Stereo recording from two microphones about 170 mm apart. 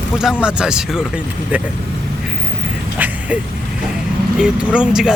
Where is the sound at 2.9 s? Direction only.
10° right (ahead or behind).